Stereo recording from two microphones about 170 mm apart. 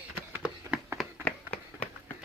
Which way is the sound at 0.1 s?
15° right (ahead or behind).